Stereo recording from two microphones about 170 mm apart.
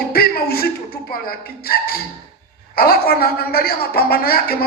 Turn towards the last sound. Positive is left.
turn(degrees=60)  # may be behind; listen again after turning